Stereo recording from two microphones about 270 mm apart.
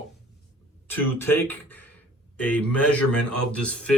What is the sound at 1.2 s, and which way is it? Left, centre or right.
Speech, centre.